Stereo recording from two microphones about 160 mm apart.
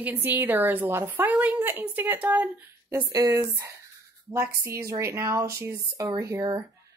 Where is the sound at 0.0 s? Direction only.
10° right (ahead or behind).